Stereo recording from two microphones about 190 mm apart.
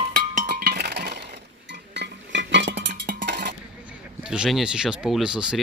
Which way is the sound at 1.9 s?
65° right (ahead or behind).